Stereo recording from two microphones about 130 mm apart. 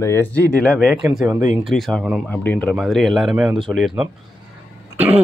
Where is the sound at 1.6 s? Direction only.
Centre (ahead or behind).